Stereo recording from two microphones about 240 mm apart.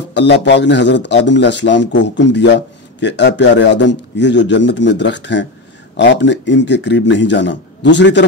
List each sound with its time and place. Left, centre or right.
0.1 s speech: left